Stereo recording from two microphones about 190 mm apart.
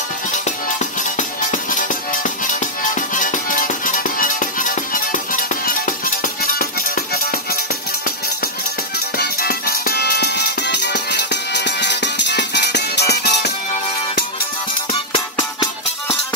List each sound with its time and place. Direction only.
0.3 s music: 40° left (ahead or behind)
9.2 s music: 55° left (ahead or behind)